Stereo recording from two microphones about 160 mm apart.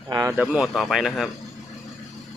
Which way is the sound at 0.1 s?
20° right (ahead or behind).